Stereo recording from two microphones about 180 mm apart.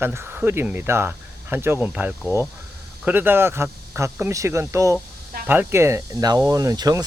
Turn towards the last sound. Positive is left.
turn(degrees=-20)  # may be behind; listen again after turning